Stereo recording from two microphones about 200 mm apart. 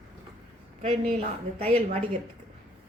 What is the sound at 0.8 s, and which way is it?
A woman's voice, 30° right (ahead or behind).